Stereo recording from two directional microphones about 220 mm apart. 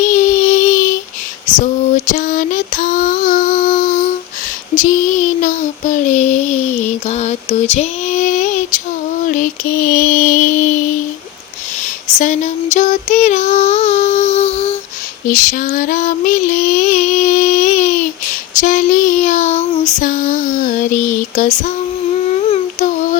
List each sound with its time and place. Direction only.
0.0 s child singing: 35° left (ahead or behind)
9.3 s female singing: 40° left (ahead or behind)
12.2 s child singing: 35° left (ahead or behind)
15.3 s female singing: 35° left (ahead or behind)
18.6 s child singing: 40° left (ahead or behind)
20.0 s a sound: 35° left (ahead or behind)
22.4 s humming: 30° left (ahead or behind)